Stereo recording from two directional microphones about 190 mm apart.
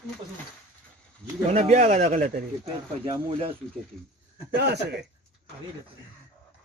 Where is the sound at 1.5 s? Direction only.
35° right (ahead or behind).